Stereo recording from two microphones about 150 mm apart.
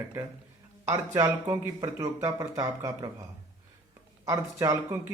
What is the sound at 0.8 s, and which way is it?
Speech, 20° right (ahead or behind).